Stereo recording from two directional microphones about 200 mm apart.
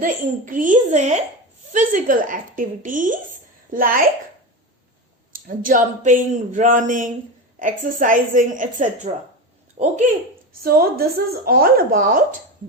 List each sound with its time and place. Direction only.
0.0 s a woman's voice: 40° right (ahead or behind)
5.3 s a woman's voice: 40° right (ahead or behind)
10.6 s a woman's voice: 50° right (ahead or behind)